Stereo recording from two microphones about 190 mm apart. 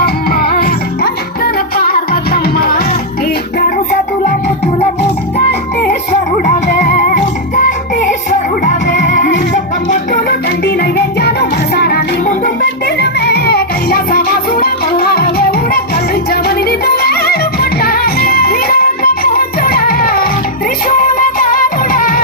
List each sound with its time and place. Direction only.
0.0 s music: 55° left (ahead or behind)
6.7 s music: 45° left (ahead or behind)
10.8 s music: 55° left (ahead or behind)
16.3 s music: 55° left (ahead or behind)